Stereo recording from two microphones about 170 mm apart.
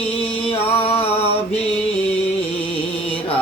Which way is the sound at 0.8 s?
35° left (ahead or behind).